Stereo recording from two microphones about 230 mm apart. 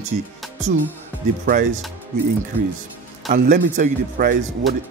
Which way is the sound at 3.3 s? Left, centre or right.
Right.